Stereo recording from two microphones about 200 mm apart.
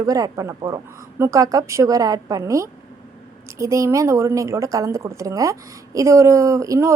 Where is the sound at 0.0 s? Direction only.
15° right (ahead or behind).